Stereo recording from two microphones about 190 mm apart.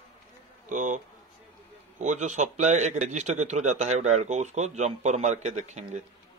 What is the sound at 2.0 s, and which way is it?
A man's voice, 40° right (ahead or behind).